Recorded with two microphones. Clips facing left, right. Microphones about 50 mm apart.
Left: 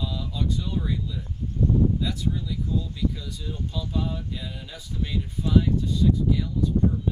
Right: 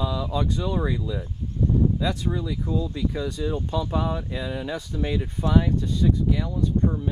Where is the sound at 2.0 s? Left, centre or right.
Right.